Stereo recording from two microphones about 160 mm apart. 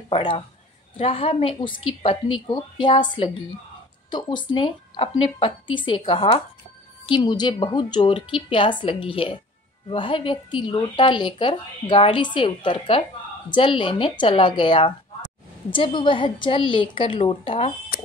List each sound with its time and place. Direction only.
0.1 s a woman's voice: 30° left (ahead or behind)